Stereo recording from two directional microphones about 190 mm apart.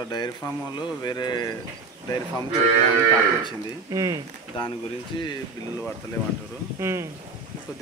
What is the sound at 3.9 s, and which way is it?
Speech, 20° right (ahead or behind).